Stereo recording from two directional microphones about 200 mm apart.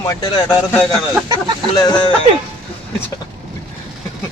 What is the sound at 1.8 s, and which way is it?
Speech, 20° left (ahead or behind).